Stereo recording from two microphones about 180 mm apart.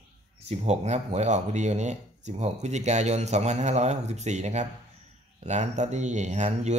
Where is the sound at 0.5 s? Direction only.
35° right (ahead or behind).